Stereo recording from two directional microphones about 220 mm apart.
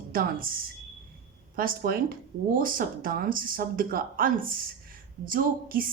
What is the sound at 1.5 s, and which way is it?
Speech, 40° right (ahead or behind).